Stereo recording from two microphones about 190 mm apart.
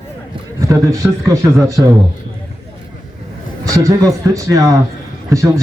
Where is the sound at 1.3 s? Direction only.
15° right (ahead or behind).